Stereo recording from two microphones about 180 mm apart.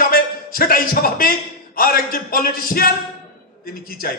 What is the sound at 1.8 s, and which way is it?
A man's voice, 55° left (ahead or behind).